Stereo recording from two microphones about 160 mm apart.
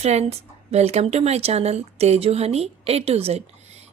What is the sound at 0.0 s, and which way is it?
A woman's voice, 40° right (ahead or behind).